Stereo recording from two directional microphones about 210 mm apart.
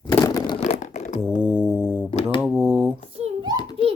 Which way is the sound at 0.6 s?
35° left (ahead or behind).